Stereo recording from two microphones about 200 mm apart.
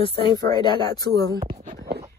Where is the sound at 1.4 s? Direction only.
40° right (ahead or behind).